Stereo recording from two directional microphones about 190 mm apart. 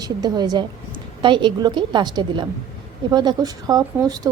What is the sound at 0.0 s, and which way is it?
Speech, 20° right (ahead or behind).